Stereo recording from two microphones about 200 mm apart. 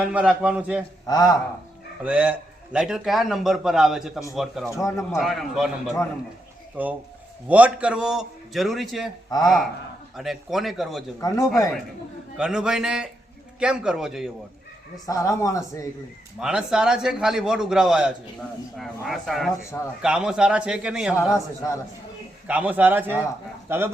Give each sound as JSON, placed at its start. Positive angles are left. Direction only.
{"t": 0.1, "sound": "a man's voice", "side_deg": -5}
{"t": 1.0, "sound": "speech", "side_deg": 20}
{"t": 2.0, "sound": "a man's voice", "side_deg": -5}
{"t": 4.8, "sound": "a man's voice", "side_deg": 15}
{"t": 5.1, "sound": "a man's voice", "side_deg": 0}
{"t": 6.8, "sound": "a man's voice", "side_deg": -10}
{"t": 10.2, "sound": "a man's voice", "side_deg": 0}
{"t": 11.2, "sound": "a man's voice", "side_deg": 15}
{"t": 12.4, "sound": "a man's voice", "side_deg": -5}
{"t": 15.0, "sound": "a man's voice", "side_deg": 15}
{"t": 16.4, "sound": "a man's voice", "side_deg": -5}
{"t": 22.4, "sound": "a man's voice", "side_deg": -5}